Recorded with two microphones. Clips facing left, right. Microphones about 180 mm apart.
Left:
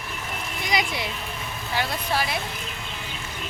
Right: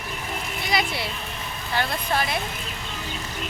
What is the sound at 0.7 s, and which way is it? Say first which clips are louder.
Speech: even; 15° left (ahead or behind).